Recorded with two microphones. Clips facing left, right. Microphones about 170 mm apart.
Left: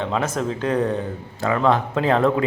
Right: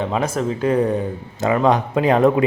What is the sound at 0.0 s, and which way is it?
A man's voice, 10° right (ahead or behind).